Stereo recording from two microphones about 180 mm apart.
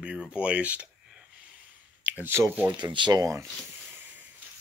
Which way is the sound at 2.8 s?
25° right (ahead or behind).